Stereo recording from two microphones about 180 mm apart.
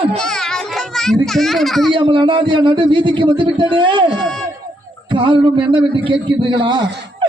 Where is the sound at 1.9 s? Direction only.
25° right (ahead or behind).